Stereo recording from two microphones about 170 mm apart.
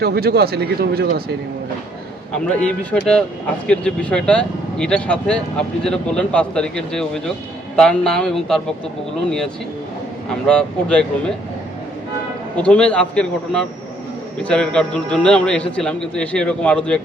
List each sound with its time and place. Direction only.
0.0 s speech: 65° right (ahead or behind)
2.6 s speech: 5° left (ahead or behind)
10.2 s speech: 5° left (ahead or behind)
12.5 s speech: 5° left (ahead or behind)